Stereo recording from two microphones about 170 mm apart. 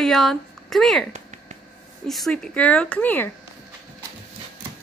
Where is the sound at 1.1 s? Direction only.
45° right (ahead or behind).